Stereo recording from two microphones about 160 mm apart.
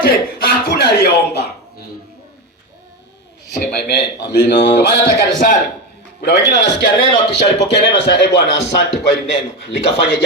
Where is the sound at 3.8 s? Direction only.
90° left.